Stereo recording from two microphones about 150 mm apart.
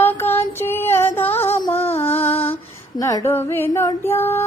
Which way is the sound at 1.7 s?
40° left (ahead or behind).